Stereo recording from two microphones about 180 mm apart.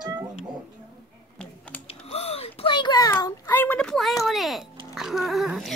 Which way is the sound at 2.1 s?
35° left (ahead or behind).